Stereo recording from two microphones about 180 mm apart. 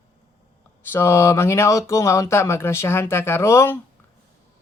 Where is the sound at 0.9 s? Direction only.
15° left (ahead or behind).